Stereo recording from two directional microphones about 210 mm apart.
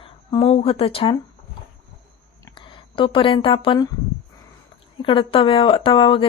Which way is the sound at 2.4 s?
20° left (ahead or behind).